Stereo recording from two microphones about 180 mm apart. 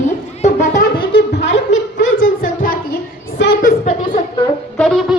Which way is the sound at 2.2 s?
50° left (ahead or behind).